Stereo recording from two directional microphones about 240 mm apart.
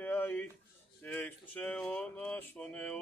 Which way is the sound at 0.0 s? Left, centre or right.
Centre.